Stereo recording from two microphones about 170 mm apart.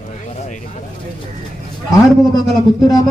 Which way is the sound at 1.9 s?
25° left (ahead or behind).